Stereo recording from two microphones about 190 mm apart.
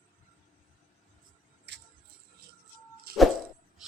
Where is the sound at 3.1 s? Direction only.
55° right (ahead or behind).